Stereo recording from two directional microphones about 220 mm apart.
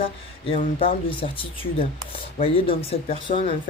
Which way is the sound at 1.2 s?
25° left (ahead or behind).